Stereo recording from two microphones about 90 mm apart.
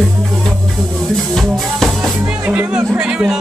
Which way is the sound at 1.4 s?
Centre (ahead or behind).